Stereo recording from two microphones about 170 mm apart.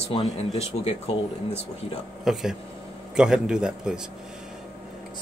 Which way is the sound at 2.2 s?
Centre (ahead or behind).